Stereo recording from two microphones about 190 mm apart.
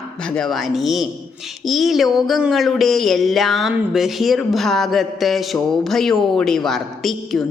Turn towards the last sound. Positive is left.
turn(degrees=0)  # may be behind; listen again after turning